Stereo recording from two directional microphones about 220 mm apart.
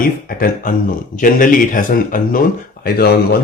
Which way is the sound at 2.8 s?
40° left (ahead or behind).